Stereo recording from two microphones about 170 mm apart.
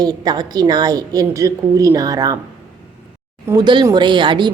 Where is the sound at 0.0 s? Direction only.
25° right (ahead or behind).